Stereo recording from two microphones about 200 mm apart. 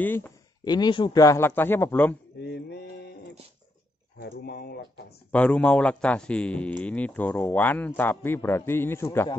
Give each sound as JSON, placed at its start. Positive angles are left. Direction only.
{"t": 0.0, "sound": "a man's voice", "side_deg": 10}
{"t": 0.7, "sound": "a man's voice", "side_deg": 20}
{"t": 2.4, "sound": "mantra", "side_deg": 55}
{"t": 4.2, "sound": "speech", "side_deg": 50}
{"t": 5.3, "sound": "a man's voice", "side_deg": 5}